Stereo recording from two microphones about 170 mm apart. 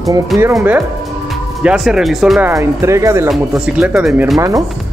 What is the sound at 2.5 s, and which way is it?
Speech, 15° right (ahead or behind).